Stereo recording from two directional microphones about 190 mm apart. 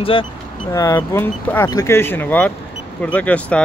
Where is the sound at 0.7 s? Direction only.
15° left (ahead or behind).